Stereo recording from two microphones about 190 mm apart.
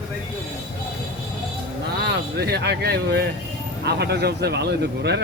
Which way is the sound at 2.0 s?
60° right (ahead or behind).